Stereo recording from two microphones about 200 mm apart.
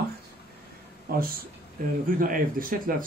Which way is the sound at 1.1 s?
45° right (ahead or behind).